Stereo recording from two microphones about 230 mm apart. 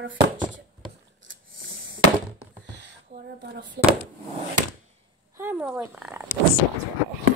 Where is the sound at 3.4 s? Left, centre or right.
Right.